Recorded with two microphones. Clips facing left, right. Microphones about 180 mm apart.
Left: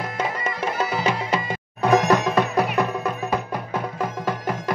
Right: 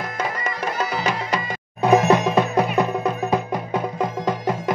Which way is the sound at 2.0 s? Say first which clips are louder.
Right 2 dB; 20° right (ahead or behind).